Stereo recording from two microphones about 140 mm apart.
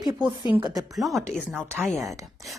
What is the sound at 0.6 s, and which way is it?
Speech, 25° right (ahead or behind).